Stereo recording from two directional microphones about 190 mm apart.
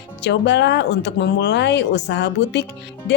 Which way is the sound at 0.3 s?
65° left (ahead or behind).